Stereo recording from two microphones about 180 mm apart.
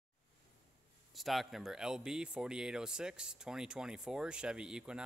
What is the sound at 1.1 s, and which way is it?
Speech, centre (ahead or behind).